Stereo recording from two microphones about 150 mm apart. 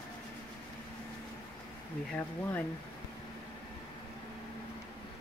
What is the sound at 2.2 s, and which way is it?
Speech, 10° left (ahead or behind).